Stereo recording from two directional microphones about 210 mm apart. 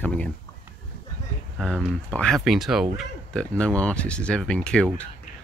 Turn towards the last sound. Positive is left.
turn(degrees=5)  # may be behind; listen again after turning